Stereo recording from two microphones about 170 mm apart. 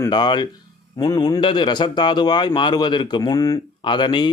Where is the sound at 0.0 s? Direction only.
25° left (ahead or behind).